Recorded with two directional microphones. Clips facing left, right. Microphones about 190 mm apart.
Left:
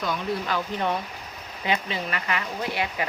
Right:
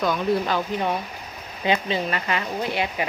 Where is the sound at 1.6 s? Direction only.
30° right (ahead or behind).